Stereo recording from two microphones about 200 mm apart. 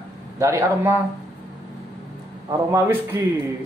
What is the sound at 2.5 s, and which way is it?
Speech, 15° right (ahead or behind).